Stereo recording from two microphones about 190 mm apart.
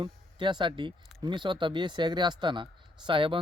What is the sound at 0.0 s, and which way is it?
Speech, 25° right (ahead or behind).